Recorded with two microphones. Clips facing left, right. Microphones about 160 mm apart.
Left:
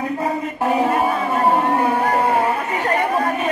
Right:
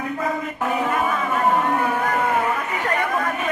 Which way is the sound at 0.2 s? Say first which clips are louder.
Left 3 dB; 35° left (ahead or behind).